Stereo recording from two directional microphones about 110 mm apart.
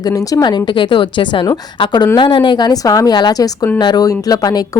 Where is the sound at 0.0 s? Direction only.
35° left (ahead or behind).